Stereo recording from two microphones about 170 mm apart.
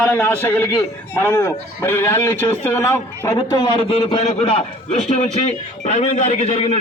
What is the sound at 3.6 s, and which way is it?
Speech, 30° left (ahead or behind).